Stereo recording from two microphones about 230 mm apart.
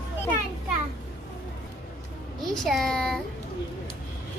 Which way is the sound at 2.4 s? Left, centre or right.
Centre.